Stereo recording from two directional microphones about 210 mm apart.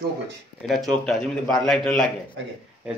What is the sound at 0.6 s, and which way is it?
A man's voice, centre (ahead or behind).